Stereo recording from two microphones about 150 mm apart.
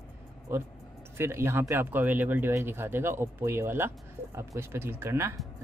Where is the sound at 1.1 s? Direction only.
15° right (ahead or behind).